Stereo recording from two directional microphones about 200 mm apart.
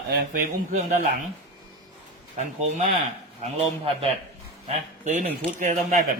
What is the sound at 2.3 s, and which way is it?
A man's voice, 35° right (ahead or behind).